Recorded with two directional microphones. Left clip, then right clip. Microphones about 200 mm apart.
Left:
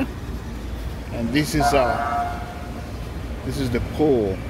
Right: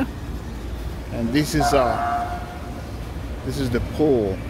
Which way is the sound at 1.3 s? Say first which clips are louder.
Even; 15° right (ahead or behind).